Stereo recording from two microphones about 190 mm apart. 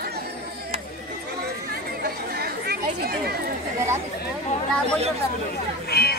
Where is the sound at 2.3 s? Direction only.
55° right (ahead or behind).